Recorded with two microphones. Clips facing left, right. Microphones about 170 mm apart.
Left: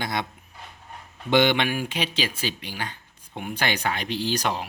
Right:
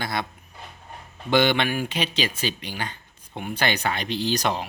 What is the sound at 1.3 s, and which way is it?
Speech, 15° left (ahead or behind).